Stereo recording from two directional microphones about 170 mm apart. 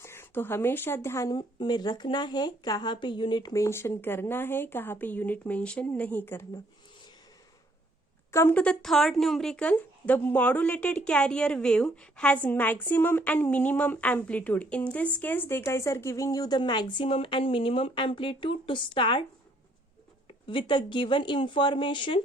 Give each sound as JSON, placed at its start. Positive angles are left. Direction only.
{"t": 0.0, "sound": "speech", "side_deg": 15}
{"t": 8.3, "sound": "speech", "side_deg": 15}
{"t": 20.2, "sound": "speech", "side_deg": 30}